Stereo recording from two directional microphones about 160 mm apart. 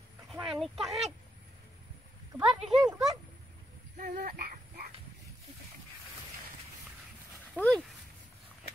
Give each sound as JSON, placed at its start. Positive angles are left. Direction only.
{"t": 0.5, "sound": "speech", "side_deg": 0}
{"t": 2.4, "sound": "speech", "side_deg": 0}
{"t": 4.0, "sound": "speech", "side_deg": -65}
{"t": 7.6, "sound": "speech", "side_deg": -10}